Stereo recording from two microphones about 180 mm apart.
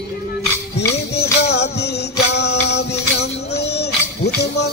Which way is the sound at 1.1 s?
65° left (ahead or behind).